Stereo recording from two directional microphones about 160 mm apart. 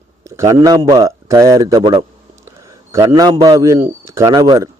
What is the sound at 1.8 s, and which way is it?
Speech, 35° right (ahead or behind).